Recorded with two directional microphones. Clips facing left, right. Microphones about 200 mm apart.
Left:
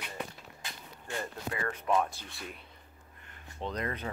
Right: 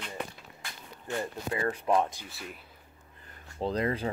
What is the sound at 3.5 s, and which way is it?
Speech, 30° right (ahead or behind).